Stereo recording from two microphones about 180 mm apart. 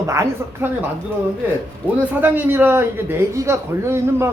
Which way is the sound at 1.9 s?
10° right (ahead or behind).